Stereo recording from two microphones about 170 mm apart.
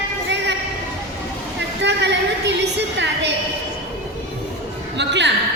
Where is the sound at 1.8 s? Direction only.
90° right.